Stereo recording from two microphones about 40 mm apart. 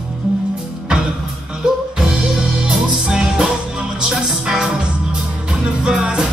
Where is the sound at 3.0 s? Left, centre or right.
Centre.